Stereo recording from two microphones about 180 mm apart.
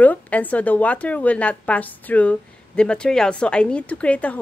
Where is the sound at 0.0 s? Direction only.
10° left (ahead or behind).